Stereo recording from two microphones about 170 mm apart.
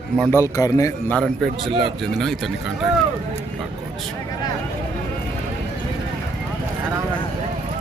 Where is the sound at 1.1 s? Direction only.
5° left (ahead or behind).